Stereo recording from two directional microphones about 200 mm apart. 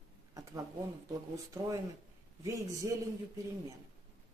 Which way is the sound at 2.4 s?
15° right (ahead or behind).